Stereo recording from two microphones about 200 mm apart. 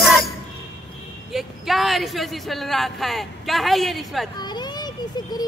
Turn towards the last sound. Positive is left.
turn(degrees=20)  # may be behind; listen again after turning